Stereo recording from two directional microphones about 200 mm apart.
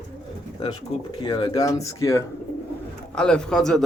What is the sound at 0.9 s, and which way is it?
Speech, 30° left (ahead or behind).